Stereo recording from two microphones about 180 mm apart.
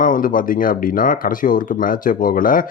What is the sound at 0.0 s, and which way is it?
Speech, 50° left (ahead or behind).